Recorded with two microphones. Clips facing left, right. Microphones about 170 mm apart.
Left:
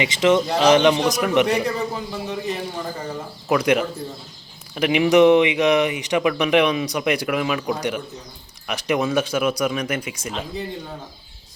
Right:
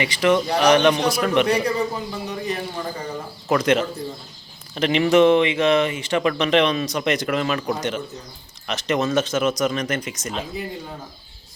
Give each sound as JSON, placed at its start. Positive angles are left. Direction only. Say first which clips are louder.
{"t": 0.0, "sound": "speech", "louder": "left 1 dB", "side_deg": 20}
{"t": 1.5, "sound": "a man's voice", "louder": "right 1 dB", "side_deg": 0}